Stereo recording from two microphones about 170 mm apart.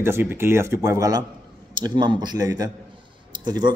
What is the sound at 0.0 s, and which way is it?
A man's voice, 15° right (ahead or behind).